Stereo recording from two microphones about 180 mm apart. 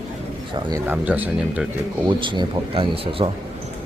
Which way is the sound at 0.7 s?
10° right (ahead or behind).